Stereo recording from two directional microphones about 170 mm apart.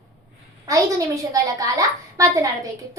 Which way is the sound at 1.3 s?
20° right (ahead or behind).